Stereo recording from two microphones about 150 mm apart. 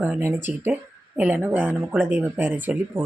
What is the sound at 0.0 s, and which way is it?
Speech, 15° right (ahead or behind).